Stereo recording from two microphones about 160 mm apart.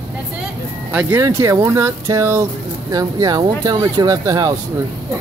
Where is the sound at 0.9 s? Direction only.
15° right (ahead or behind).